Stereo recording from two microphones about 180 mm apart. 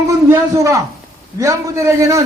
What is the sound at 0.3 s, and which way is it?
A man's voice, 15° right (ahead or behind).